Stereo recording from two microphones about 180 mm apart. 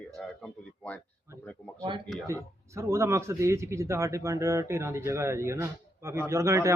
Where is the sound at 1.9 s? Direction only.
30° right (ahead or behind).